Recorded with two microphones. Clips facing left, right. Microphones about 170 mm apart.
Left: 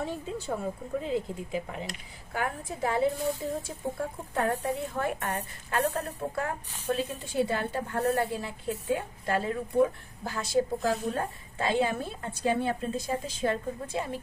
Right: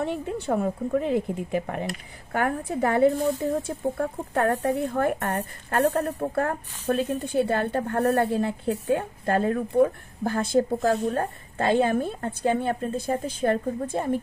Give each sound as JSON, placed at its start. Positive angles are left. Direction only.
{"t": 0.0, "sound": "a woman's voice", "side_deg": -60}